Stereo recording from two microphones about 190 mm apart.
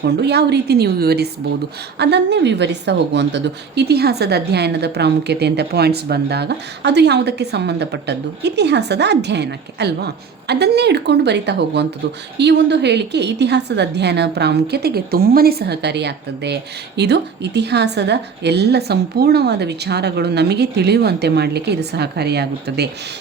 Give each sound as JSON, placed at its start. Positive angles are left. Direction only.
{"t": 0.0, "sound": "a woman's voice", "side_deg": -60}